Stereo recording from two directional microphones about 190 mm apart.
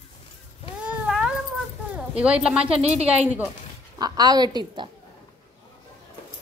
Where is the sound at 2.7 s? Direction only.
35° right (ahead or behind).